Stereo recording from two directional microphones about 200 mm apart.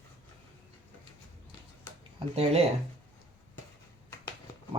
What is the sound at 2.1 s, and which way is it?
Speech, 30° right (ahead or behind).